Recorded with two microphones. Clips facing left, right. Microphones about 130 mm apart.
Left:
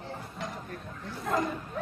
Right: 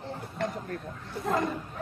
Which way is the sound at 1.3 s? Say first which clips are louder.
Right 1 dB; centre (ahead or behind).